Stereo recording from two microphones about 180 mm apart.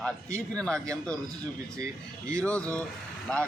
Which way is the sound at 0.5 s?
5° left (ahead or behind).